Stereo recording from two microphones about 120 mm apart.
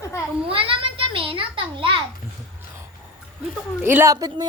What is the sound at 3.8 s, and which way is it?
Speech, 15° right (ahead or behind).